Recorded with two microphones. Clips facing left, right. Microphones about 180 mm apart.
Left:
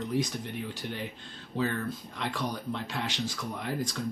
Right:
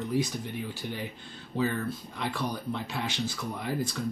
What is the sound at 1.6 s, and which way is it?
Speech, 5° right (ahead or behind).